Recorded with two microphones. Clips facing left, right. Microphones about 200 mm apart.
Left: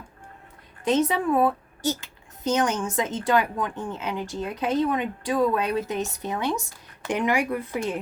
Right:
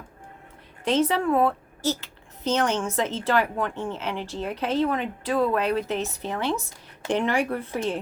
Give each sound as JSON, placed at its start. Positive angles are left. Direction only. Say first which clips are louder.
{"t": 0.9, "sound": "a woman's voice", "louder": "right 1 dB", "side_deg": 15}